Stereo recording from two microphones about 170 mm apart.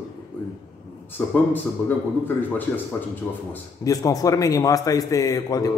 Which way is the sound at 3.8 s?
20° left (ahead or behind).